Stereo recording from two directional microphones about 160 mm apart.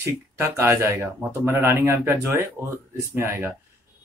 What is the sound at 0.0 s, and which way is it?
Speech, 15° right (ahead or behind).